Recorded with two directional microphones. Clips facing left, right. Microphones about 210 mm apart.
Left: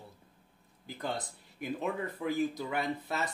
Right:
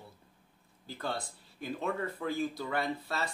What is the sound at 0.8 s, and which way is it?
Speech, 15° left (ahead or behind).